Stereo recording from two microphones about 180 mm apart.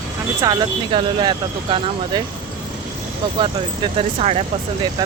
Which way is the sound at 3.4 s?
30° right (ahead or behind).